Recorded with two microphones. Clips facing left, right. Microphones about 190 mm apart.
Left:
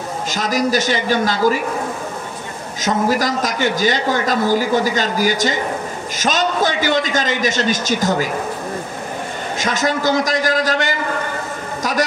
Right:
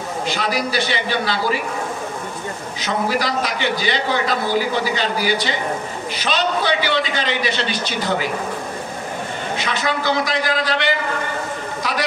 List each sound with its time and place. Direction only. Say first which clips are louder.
0.3 s a man's voice: left 5 dB; 45° left (ahead or behind)
2.8 s a man's voice: left 4 dB; 45° left (ahead or behind)
9.6 s a man's voice: left 5 dB; 45° left (ahead or behind)